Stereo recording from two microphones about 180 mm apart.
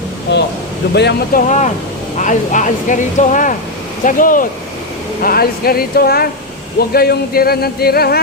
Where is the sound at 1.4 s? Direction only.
40° left (ahead or behind).